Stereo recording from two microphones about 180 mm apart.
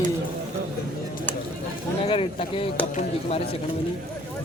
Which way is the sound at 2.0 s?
35° left (ahead or behind).